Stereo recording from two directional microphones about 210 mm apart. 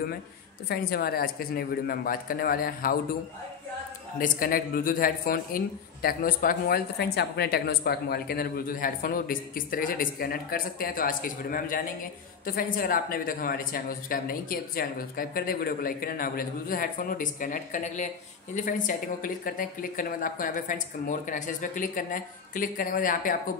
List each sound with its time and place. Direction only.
0.7 s speech: 45° left (ahead or behind)
4.2 s speech: 45° left (ahead or behind)